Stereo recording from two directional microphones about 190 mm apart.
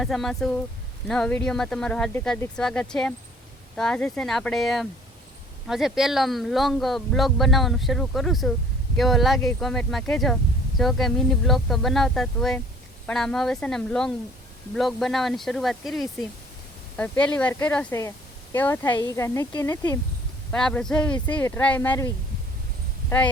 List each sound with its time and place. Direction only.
0.0 s speech: centre (ahead or behind)
20.5 s speech: 5° left (ahead or behind)